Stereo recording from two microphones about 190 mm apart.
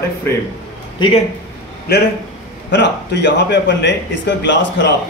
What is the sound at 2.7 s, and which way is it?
Speech, 65° left (ahead or behind).